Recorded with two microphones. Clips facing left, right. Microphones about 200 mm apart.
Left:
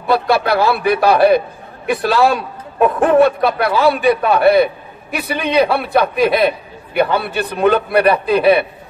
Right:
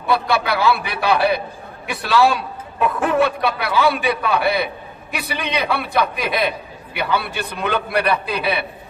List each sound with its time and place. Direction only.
0.3 s a man's voice: 50° left (ahead or behind)